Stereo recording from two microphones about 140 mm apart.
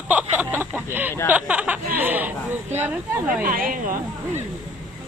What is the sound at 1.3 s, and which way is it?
Speech, 10° right (ahead or behind).